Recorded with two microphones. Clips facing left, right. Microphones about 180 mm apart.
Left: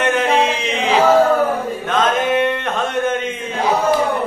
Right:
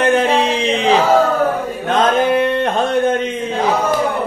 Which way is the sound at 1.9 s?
35° right (ahead or behind).